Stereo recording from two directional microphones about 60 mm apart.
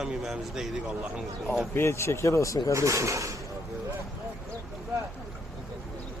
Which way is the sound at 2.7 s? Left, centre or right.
Right.